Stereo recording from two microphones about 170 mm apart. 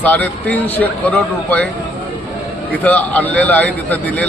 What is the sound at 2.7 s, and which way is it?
A man's voice, 10° left (ahead or behind).